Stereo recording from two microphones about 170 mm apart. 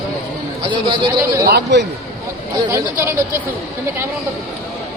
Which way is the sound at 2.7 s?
15° right (ahead or behind).